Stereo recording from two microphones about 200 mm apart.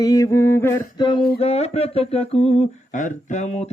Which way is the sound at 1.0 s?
25° left (ahead or behind).